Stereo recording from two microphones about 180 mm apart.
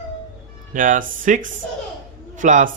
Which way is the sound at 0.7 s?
45° right (ahead or behind).